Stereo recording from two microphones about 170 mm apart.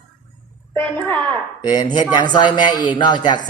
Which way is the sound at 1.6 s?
25° left (ahead or behind).